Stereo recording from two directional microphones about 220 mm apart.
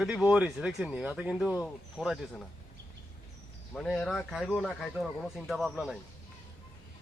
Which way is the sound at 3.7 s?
5° left (ahead or behind).